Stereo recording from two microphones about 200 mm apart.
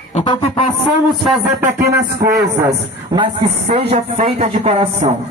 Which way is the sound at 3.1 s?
25° right (ahead or behind).